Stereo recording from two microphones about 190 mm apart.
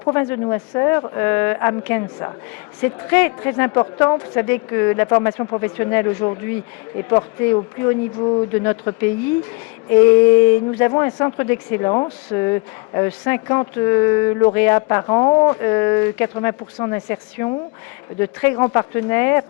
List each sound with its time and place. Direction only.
0.1 s speech: 15° left (ahead or behind)
7.5 s speech: 20° left (ahead or behind)
18.8 s speech: 15° left (ahead or behind)